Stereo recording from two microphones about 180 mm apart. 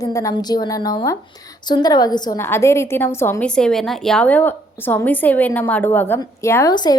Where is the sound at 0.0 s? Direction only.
20° left (ahead or behind).